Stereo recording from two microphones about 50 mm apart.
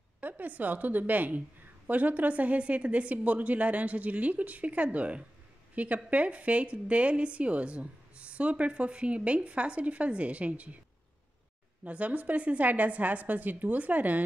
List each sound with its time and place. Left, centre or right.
0.2 s a woman's voice: right
11.8 s a woman's voice: right